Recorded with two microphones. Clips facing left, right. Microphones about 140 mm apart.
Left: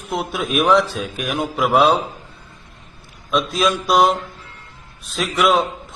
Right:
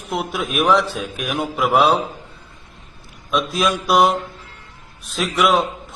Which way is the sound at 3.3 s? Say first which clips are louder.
Left 1 dB; centre (ahead or behind).